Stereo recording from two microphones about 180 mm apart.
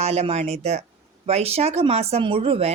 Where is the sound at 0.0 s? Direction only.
35° right (ahead or behind).